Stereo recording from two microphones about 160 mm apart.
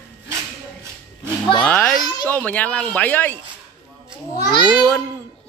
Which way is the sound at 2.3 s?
10° left (ahead or behind).